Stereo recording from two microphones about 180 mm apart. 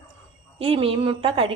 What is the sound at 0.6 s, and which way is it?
Speech, 30° right (ahead or behind).